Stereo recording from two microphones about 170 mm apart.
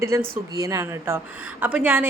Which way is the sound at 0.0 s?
15° right (ahead or behind).